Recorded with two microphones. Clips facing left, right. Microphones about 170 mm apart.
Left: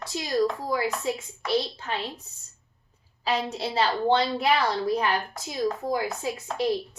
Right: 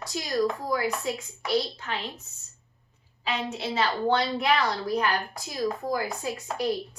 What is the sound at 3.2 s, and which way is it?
A woman's voice, 35° left (ahead or behind).